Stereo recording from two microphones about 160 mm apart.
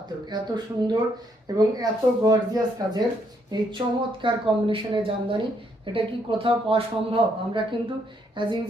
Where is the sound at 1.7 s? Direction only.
25° right (ahead or behind).